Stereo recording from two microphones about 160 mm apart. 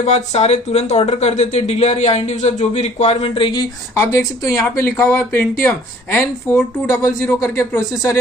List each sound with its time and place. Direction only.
0.0 s speech: 45° left (ahead or behind)
4.1 s speech: 20° left (ahead or behind)